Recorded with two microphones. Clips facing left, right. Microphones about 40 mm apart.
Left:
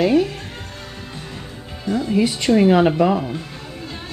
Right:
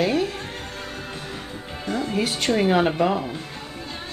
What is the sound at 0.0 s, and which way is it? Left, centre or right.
Music, centre.